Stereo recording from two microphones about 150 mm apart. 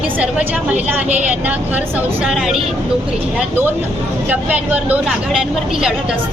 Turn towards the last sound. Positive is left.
turn(degrees=-10)  # may be behind; listen again after turning